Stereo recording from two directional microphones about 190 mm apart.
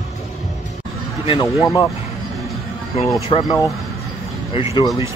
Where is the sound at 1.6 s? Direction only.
15° left (ahead or behind).